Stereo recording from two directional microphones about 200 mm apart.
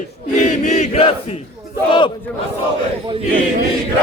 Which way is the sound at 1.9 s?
25° left (ahead or behind).